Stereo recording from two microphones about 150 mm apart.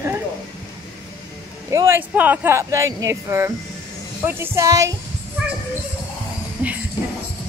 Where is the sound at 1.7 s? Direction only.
20° right (ahead or behind).